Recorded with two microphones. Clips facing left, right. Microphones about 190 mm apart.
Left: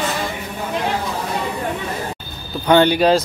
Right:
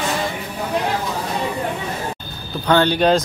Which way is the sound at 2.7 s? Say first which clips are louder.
Left 3 dB; 15° left (ahead or behind).